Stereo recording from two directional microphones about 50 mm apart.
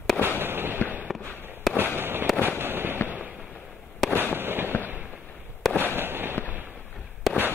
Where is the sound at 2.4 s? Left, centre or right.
Right.